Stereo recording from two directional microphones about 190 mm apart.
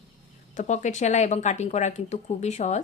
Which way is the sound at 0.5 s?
40° left (ahead or behind).